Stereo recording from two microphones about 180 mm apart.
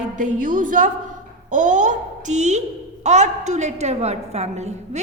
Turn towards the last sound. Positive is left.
turn(degrees=-40)  # may be behind; listen again after turning